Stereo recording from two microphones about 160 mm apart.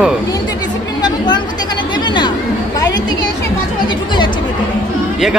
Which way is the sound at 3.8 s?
30° left (ahead or behind).